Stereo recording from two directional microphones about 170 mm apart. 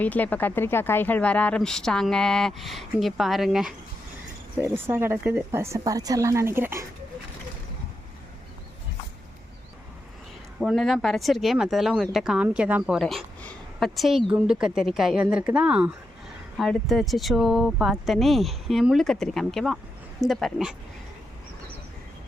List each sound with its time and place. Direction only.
0.0 s a woman's voice: 10° left (ahead or behind)
4.5 s speech: 15° right (ahead or behind)
10.6 s a woman's voice: centre (ahead or behind)